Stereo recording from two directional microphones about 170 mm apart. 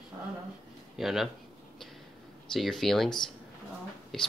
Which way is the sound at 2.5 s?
Centre (ahead or behind).